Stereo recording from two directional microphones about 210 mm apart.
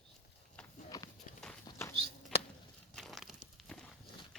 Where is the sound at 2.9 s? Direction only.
Centre (ahead or behind).